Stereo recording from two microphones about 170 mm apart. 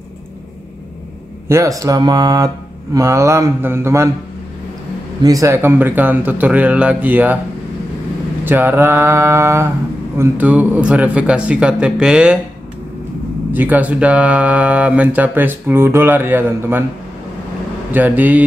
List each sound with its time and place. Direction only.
1.5 s speech: 20° right (ahead or behind)
5.2 s speech: 20° right (ahead or behind)
8.5 s speech: 10° right (ahead or behind)
13.5 s speech: 10° right (ahead or behind)
17.9 s speech: 10° right (ahead or behind)